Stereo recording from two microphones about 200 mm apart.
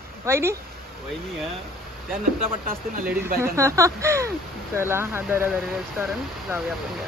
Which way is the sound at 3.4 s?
15° right (ahead or behind).